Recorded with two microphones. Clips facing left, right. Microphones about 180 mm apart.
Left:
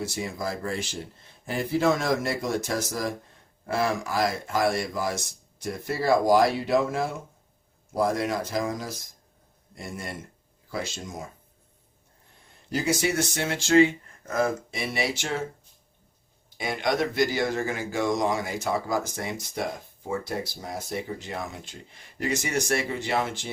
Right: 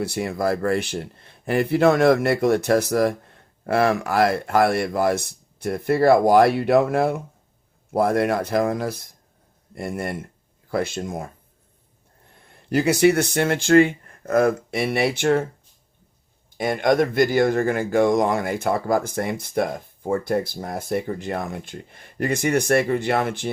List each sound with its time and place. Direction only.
0.0 s a man's voice: 60° right (ahead or behind)
12.7 s a man's voice: 65° right (ahead or behind)
16.6 s a man's voice: 50° right (ahead or behind)